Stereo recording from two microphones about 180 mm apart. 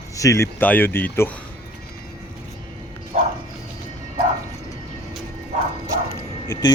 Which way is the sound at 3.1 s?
40° right (ahead or behind).